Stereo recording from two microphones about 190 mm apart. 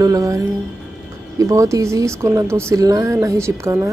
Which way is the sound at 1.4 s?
15° right (ahead or behind).